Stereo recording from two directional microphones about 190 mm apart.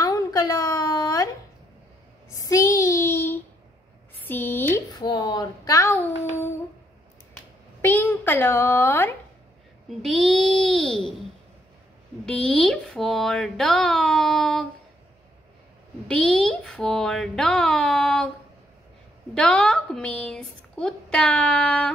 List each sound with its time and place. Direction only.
0.0 s a sound: 20° left (ahead or behind)
2.3 s child singing: 15° left (ahead or behind)
4.2 s a woman's voice: 10° left (ahead or behind)
9.8 s a woman's voice: centre (ahead or behind)
12.3 s a woman's voice: 5° left (ahead or behind)
16.1 s a woman's voice: 5° left (ahead or behind)
19.3 s a woman's voice: 5° left (ahead or behind)